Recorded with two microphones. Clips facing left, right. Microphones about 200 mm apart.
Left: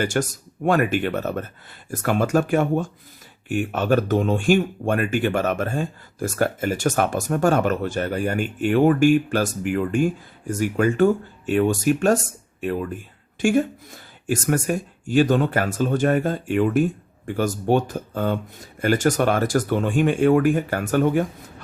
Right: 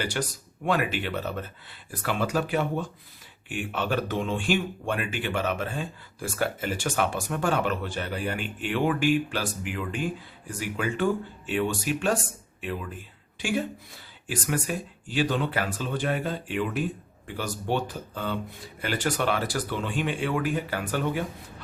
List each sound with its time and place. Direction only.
0.0 s speech: 45° left (ahead or behind)